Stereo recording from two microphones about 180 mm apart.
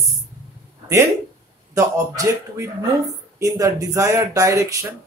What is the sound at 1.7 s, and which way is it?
Speech, 20° right (ahead or behind).